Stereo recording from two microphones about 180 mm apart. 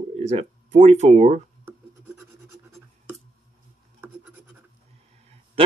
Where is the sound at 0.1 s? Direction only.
35° right (ahead or behind).